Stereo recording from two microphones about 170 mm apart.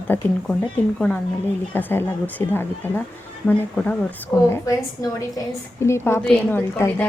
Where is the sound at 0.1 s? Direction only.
10° left (ahead or behind).